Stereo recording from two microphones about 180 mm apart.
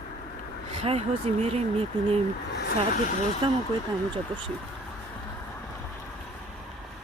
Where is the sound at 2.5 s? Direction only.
65° left (ahead or behind).